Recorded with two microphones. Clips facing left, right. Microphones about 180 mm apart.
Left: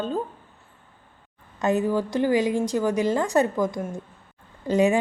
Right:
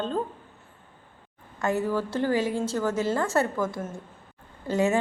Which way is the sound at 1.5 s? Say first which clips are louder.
Left 4 dB; 20° left (ahead or behind).